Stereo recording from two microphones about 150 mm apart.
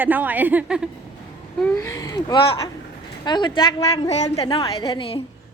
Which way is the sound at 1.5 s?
5° left (ahead or behind).